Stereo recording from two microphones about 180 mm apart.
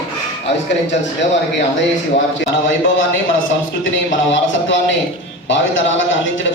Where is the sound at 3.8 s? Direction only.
90° left.